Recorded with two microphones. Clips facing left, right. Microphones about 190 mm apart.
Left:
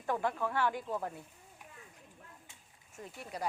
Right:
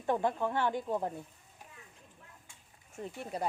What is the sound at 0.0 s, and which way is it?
Speech, 25° right (ahead or behind).